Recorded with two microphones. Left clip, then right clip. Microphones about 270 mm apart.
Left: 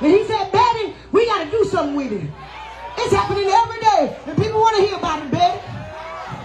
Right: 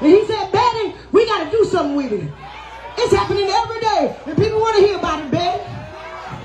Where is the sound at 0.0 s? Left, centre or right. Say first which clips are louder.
Right 2 dB; left.